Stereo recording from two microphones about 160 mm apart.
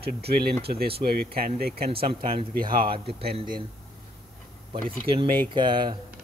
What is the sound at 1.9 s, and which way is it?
Speech, 35° right (ahead or behind).